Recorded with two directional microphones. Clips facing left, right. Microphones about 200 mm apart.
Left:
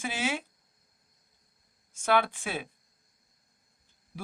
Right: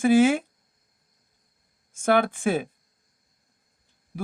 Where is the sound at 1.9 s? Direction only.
50° right (ahead or behind).